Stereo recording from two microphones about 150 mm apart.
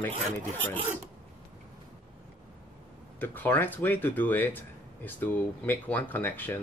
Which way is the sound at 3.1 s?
10° left (ahead or behind).